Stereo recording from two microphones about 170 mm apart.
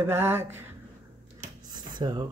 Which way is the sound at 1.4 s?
25° right (ahead or behind).